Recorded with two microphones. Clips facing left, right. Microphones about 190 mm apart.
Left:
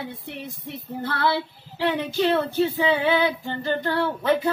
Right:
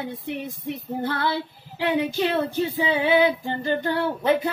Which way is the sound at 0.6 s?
15° right (ahead or behind).